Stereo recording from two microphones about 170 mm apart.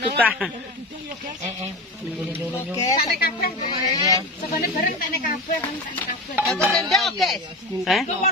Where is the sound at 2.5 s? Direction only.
20° left (ahead or behind).